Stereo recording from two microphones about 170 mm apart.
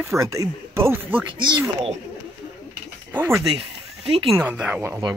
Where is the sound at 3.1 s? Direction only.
15° right (ahead or behind).